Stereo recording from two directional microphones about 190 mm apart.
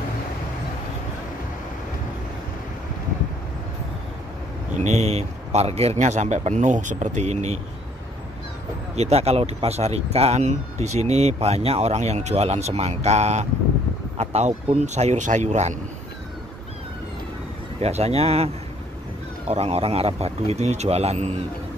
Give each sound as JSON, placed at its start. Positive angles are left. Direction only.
{"t": 4.7, "sound": "a man's voice", "side_deg": -35}
{"t": 8.9, "sound": "speech", "side_deg": -35}
{"t": 17.7, "sound": "speech", "side_deg": -35}